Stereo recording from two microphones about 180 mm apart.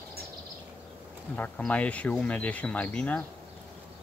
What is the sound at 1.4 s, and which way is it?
Speech, 10° left (ahead or behind).